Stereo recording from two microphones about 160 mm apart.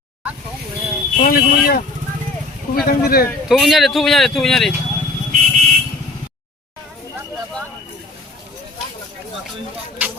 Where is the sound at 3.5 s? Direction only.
Centre (ahead or behind).